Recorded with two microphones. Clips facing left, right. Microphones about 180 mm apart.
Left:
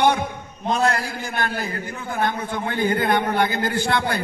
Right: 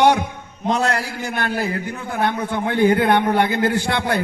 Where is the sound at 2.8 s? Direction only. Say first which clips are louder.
Right 5 dB; 65° right (ahead or behind).